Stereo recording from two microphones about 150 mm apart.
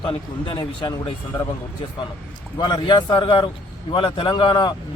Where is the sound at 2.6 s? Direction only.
30° left (ahead or behind).